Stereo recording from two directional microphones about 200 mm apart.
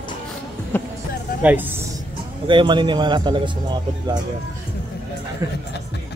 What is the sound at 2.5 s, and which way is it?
A man's voice, 25° right (ahead or behind).